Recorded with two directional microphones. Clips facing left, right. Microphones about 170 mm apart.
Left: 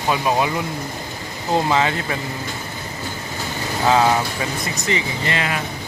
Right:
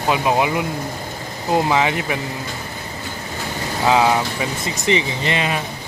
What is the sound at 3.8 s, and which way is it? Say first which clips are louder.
Speech: right 1 dB; 15° right (ahead or behind).